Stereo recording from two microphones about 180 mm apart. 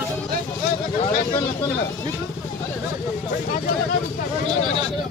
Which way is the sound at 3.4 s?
50° left (ahead or behind).